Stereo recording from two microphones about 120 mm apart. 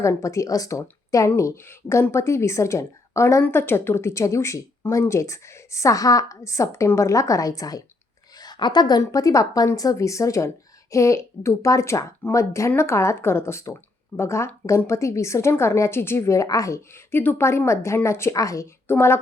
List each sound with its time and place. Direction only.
0.0 s a woman's voice: 25° left (ahead or behind)